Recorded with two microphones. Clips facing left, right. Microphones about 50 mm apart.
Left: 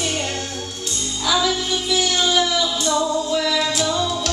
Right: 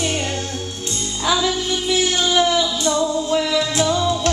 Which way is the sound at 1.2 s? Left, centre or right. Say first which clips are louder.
Right 1 dB; centre.